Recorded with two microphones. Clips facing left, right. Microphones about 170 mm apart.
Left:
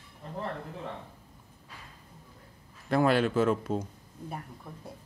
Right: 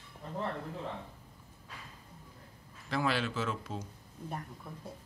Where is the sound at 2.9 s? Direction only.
50° left (ahead or behind).